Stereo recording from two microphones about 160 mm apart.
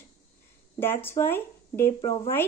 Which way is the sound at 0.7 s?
15° left (ahead or behind).